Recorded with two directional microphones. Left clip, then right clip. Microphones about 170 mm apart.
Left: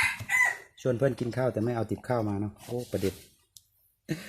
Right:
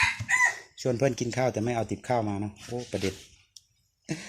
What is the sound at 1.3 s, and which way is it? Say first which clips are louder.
Speech: right 2 dB; 15° left (ahead or behind).